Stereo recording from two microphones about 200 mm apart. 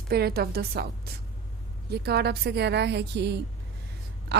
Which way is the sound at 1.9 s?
55° right (ahead or behind).